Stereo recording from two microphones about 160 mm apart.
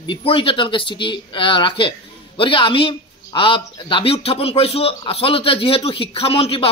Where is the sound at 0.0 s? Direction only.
35° left (ahead or behind).